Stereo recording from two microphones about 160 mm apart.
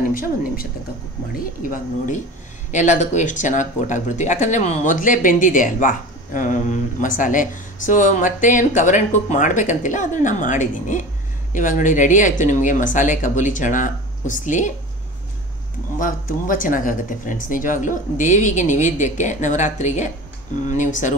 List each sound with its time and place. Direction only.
0.1 s speech: 60° left (ahead or behind)
1.7 s speech: 50° left (ahead or behind)
16.0 s speech: 55° left (ahead or behind)